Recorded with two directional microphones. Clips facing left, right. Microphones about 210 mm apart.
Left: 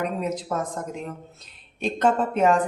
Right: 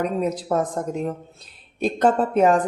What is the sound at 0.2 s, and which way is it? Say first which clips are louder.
A woman's voice: right 5 dB; 35° right (ahead or behind).